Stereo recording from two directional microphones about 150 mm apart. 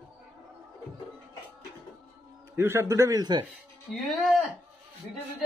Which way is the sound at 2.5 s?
15° right (ahead or behind).